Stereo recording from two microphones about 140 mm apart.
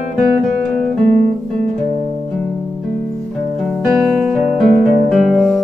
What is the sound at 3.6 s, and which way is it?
Music, centre (ahead or behind).